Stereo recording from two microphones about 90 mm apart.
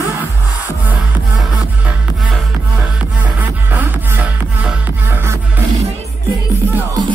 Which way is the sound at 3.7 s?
20° right (ahead or behind).